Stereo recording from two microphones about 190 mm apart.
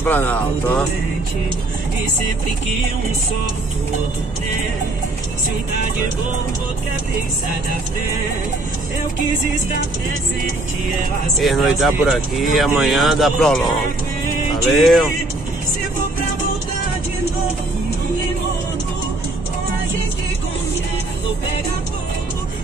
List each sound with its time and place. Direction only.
0.0 s speech: 10° left (ahead or behind)
11.3 s speech: centre (ahead or behind)